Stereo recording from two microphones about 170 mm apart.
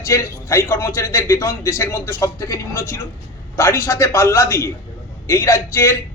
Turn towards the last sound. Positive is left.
turn(degrees=15)  # may be behind; listen again after turning